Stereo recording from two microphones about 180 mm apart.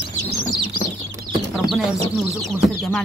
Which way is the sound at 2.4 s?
Centre (ahead or behind).